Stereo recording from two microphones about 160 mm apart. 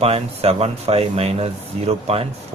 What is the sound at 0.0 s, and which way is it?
Speech, 40° right (ahead or behind).